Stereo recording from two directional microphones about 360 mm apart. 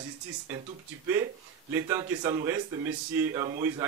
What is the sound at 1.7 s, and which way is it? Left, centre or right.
Speech, centre.